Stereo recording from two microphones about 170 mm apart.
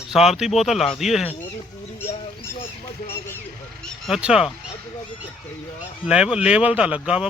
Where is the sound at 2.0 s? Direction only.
15° left (ahead or behind).